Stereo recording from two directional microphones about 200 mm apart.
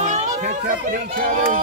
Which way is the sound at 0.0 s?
35° right (ahead or behind).